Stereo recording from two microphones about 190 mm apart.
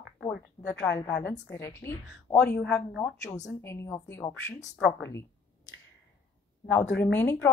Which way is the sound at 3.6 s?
15° left (ahead or behind).